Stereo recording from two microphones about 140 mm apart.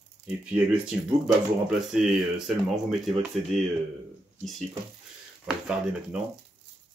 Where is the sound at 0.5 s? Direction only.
10° right (ahead or behind).